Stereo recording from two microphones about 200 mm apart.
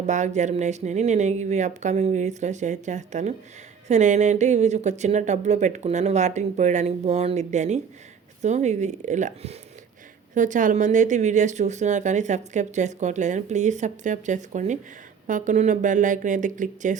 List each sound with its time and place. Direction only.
0.0 s speech: 35° right (ahead or behind)